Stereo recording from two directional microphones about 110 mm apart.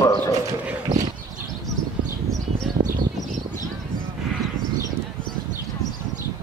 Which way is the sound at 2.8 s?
90° right.